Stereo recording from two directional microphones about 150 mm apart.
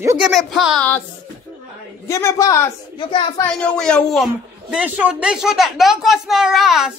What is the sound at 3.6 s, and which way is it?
Speech, 5° left (ahead or behind).